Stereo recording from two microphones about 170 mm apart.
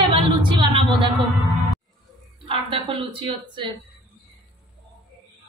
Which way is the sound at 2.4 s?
30° right (ahead or behind).